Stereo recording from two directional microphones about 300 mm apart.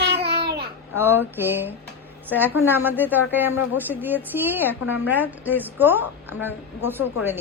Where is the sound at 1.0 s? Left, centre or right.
Centre.